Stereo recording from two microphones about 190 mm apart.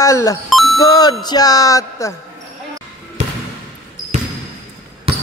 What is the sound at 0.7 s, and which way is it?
Speech, 20° left (ahead or behind).